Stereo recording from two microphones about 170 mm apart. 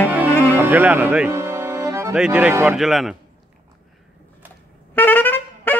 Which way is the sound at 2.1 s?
5° right (ahead or behind).